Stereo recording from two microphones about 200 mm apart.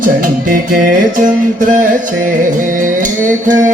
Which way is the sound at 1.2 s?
40° right (ahead or behind).